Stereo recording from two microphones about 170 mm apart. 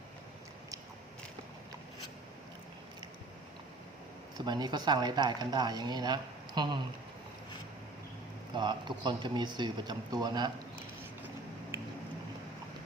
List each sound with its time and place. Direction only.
4.4 s speech: 25° right (ahead or behind)
8.5 s speech: 25° right (ahead or behind)